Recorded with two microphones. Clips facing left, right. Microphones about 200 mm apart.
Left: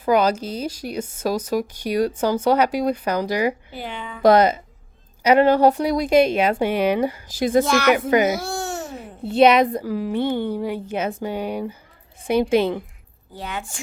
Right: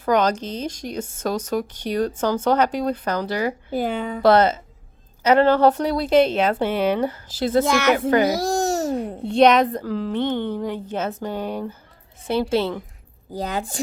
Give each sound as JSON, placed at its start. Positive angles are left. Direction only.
{"t": 0.0, "sound": "a woman's voice", "side_deg": 10}
{"t": 3.7, "sound": "a woman's voice", "side_deg": -45}
{"t": 4.2, "sound": "a woman's voice", "side_deg": 15}
{"t": 7.6, "sound": "speech", "side_deg": -20}
{"t": 7.9, "sound": "a woman's voice", "side_deg": 10}
{"t": 8.3, "sound": "babbling", "side_deg": -35}
{"t": 9.2, "sound": "a woman's voice", "side_deg": 5}
{"t": 13.3, "sound": "a woman's voice", "side_deg": -40}